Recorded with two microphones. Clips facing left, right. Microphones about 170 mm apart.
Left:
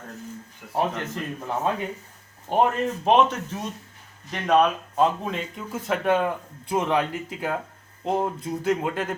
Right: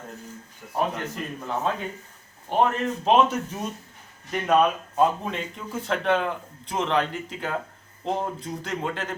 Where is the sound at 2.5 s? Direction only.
15° left (ahead or behind).